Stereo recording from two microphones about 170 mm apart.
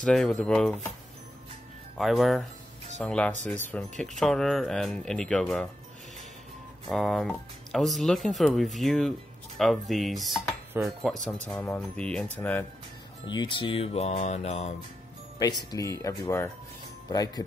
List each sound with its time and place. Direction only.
0.0 s speech: 5° left (ahead or behind)
2.0 s speech: centre (ahead or behind)
6.9 s speech: centre (ahead or behind)
10.8 s speech: 10° right (ahead or behind)
11.4 s speech: 10° left (ahead or behind)
13.3 s music: 30° left (ahead or behind)
15.3 s speech: 20° left (ahead or behind)